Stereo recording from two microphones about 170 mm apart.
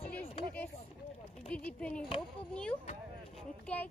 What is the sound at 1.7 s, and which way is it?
Speech, 5° left (ahead or behind).